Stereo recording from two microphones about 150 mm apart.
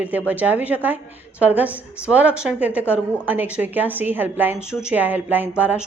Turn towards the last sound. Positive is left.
turn(degrees=-10)  # may be behind; listen again after turning